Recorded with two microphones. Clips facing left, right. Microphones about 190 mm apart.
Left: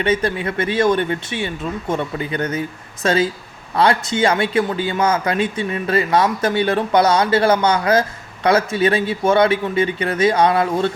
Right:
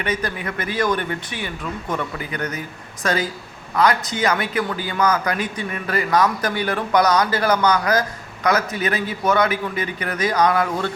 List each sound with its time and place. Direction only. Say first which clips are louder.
0.0 s speech: left 6 dB; 25° left (ahead or behind)